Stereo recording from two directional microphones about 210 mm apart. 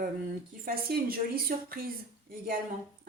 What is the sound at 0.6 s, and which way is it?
A woman's voice, 45° right (ahead or behind).